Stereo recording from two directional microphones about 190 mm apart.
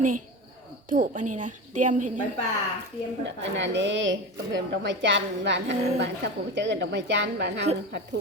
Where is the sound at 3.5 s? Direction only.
70° right (ahead or behind).